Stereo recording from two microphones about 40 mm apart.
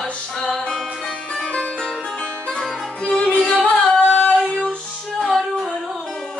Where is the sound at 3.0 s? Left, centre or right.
Left.